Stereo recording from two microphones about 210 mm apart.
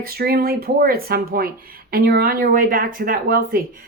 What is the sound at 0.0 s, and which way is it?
Speech, 45° right (ahead or behind).